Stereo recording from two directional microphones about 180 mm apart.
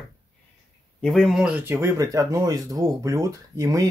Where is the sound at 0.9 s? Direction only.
Centre (ahead or behind); by 3.8 s 20° right (ahead or behind).